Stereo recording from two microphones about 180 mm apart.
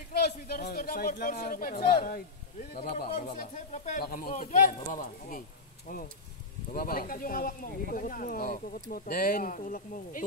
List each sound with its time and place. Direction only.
0.1 s speech: 60° left (ahead or behind)
3.3 s speech: 45° left (ahead or behind)
4.0 s speech: 50° left (ahead or behind)
6.7 s speech: 55° left (ahead or behind)